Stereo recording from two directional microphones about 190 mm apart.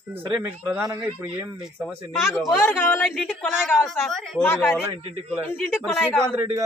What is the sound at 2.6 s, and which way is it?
A woman's voice, 10° left (ahead or behind).